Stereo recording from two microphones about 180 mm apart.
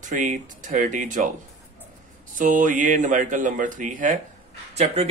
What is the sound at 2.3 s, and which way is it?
Speech, 45° right (ahead or behind).